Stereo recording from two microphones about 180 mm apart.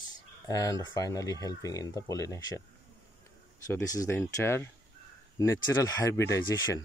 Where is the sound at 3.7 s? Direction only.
20° left (ahead or behind).